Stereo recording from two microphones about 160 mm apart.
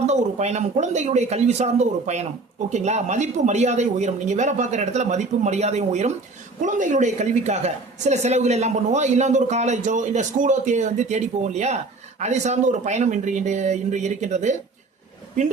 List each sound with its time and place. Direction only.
0.0 s a woman's voice: 45° right (ahead or behind)